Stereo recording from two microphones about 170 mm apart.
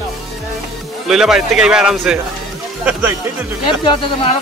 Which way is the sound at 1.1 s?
5° right (ahead or behind).